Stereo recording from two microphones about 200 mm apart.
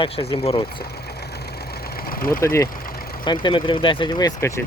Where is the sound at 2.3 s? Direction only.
15° left (ahead or behind).